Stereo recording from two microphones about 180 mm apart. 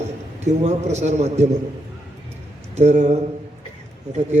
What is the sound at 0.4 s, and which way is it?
A man's voice, 40° right (ahead or behind).